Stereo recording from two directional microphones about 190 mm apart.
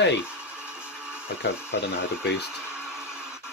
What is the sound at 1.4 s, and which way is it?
Speech, 65° left (ahead or behind).